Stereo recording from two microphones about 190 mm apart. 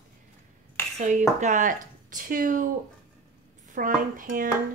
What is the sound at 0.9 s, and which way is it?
Speech, 40° right (ahead or behind).